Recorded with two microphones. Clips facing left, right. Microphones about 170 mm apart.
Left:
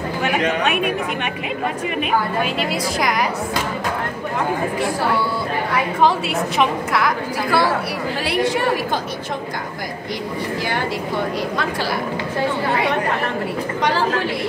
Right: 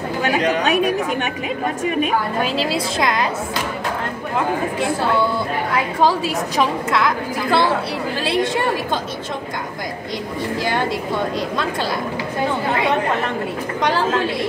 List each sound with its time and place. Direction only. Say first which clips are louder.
0.4 s speech: right 3 dB; 35° right (ahead or behind)
2.4 s speech: right 2 dB; 30° right (ahead or behind)
7.1 s a woman's voice: right 1 dB; 25° right (ahead or behind)